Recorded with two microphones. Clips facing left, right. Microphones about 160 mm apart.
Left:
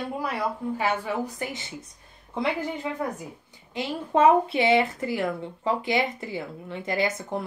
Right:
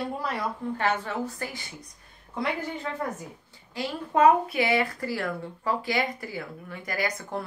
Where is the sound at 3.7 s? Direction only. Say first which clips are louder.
Left 1 dB; 25° left (ahead or behind).